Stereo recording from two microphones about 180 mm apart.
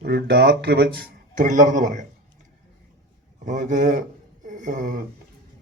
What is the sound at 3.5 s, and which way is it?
Speech, 45° right (ahead or behind).